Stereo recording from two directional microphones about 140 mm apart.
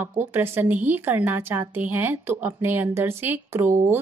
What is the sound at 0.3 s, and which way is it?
A woman's voice, 15° right (ahead or behind).